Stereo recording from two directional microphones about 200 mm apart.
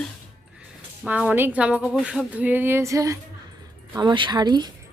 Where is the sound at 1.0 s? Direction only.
5° right (ahead or behind).